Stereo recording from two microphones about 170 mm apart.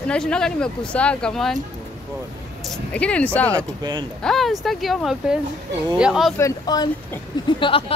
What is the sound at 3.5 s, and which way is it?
Speech, 25° right (ahead or behind).